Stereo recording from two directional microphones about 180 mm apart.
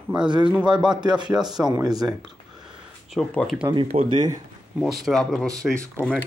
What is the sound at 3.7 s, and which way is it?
Speech, 30° right (ahead or behind).